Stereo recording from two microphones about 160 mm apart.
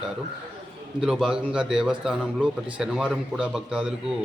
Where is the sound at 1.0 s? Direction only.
5° right (ahead or behind).